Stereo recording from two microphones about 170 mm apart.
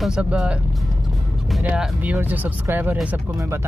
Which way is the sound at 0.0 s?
5° right (ahead or behind).